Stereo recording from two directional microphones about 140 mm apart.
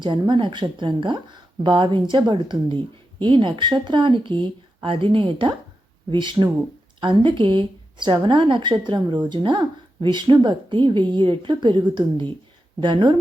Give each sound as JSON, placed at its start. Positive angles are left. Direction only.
{"t": 0.0, "sound": "a woman's voice", "side_deg": -35}